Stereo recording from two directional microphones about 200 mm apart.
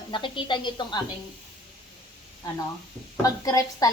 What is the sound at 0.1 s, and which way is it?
Speech, 25° left (ahead or behind).